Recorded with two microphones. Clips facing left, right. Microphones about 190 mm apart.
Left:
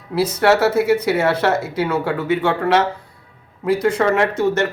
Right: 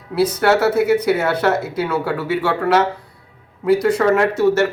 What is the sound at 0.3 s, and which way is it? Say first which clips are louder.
Speech: left 1 dB; centre (ahead or behind).